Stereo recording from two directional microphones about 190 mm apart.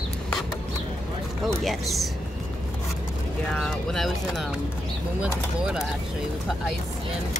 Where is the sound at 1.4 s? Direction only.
Centre (ahead or behind).